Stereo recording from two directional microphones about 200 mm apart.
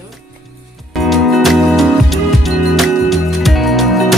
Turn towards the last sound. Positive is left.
turn(degrees=0)  # may be behind; listen again after turning